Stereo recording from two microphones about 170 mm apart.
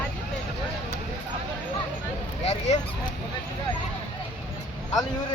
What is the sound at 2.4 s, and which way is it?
Dog, 40° left (ahead or behind).